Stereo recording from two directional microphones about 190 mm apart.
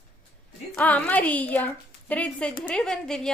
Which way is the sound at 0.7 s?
10° left (ahead or behind).